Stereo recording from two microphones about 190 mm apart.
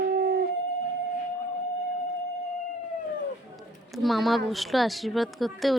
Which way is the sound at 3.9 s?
Centre (ahead or behind).